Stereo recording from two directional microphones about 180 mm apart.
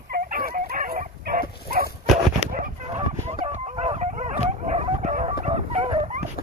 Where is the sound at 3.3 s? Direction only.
40° right (ahead or behind).